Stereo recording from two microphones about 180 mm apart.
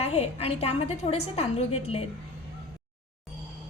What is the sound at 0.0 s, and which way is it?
A woman's voice, 35° left (ahead or behind).